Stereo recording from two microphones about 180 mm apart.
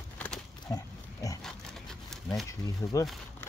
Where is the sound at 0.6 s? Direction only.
20° left (ahead or behind).